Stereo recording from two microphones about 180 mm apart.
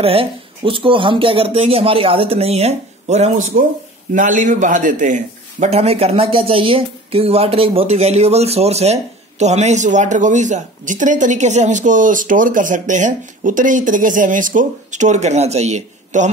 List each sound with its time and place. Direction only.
0.0 s a man's voice: 30° right (ahead or behind)